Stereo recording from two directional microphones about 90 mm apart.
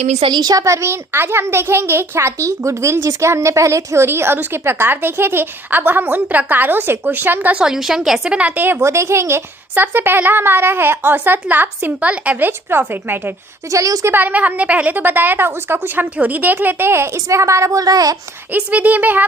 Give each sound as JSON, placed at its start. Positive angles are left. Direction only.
{"t": 0.3, "sound": "a child's voice", "side_deg": -45}
{"t": 8.8, "sound": "a woman's voice", "side_deg": -30}
{"t": 13.7, "sound": "a woman's voice", "side_deg": -35}
{"t": 14.1, "sound": "a child's voice", "side_deg": -20}
{"t": 18.5, "sound": "speech", "side_deg": -15}